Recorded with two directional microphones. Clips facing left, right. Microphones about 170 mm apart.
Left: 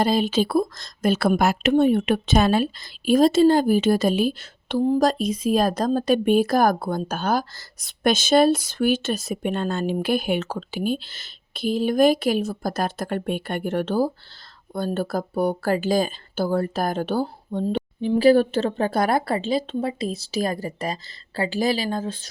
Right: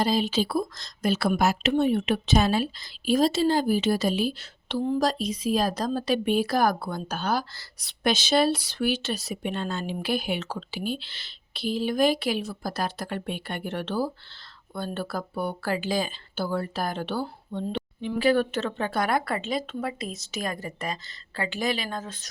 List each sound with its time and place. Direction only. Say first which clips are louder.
0.0 s a woman's voice: left 4 dB; 55° left (ahead or behind); by 22.3 s 30° left (ahead or behind)